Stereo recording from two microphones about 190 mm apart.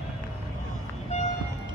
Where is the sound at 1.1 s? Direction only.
35° left (ahead or behind).